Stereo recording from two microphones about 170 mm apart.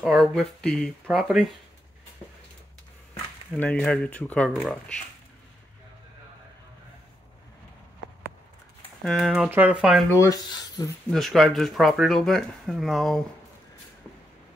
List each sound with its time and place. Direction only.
0.0 s speech: centre (ahead or behind)
3.5 s speech: 10° left (ahead or behind)
9.0 s speech: centre (ahead or behind)
10.0 s speech: 20° left (ahead or behind)
11.1 s speech: centre (ahead or behind)